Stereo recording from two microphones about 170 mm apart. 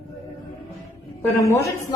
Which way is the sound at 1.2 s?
15° left (ahead or behind).